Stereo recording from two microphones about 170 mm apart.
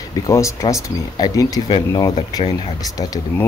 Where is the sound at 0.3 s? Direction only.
15° left (ahead or behind).